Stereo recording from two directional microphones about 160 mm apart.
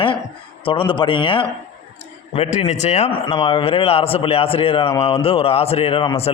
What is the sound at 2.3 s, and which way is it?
Speech, 40° left (ahead or behind).